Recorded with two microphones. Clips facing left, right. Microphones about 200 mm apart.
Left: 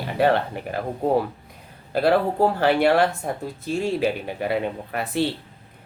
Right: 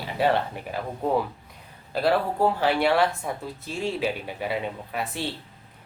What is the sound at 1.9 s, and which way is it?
Speech, 60° left (ahead or behind).